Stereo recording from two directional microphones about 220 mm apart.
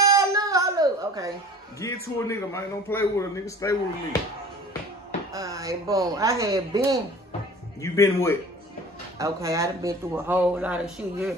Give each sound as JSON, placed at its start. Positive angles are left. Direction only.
{"t": 0.0, "sound": "baby cry", "side_deg": -15}
{"t": 2.1, "sound": "a man's voice", "side_deg": 10}
{"t": 5.3, "sound": "speech", "side_deg": -15}
{"t": 7.8, "sound": "a man's voice", "side_deg": 15}
{"t": 9.2, "sound": "speech", "side_deg": -15}